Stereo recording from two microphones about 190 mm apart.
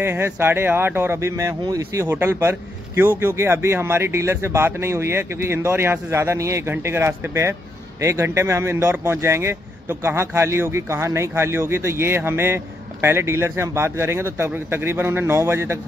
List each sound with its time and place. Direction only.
0.0 s speech: 10° right (ahead or behind)